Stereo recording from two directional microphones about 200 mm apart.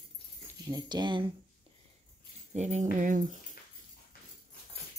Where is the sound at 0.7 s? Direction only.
20° right (ahead or behind).